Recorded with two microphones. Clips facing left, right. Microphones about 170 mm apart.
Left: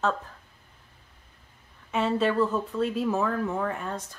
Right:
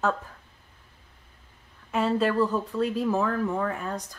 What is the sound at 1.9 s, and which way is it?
Speech, centre (ahead or behind).